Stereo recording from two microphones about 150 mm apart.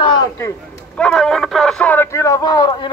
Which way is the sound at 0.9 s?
5° left (ahead or behind).